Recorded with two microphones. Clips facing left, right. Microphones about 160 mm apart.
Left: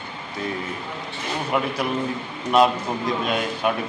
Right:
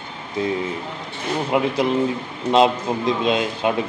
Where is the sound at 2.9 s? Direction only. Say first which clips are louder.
Right 4 dB; 20° right (ahead or behind).